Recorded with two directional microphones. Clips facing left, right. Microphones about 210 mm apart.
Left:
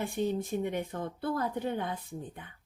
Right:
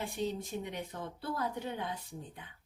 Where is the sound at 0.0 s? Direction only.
55° left (ahead or behind).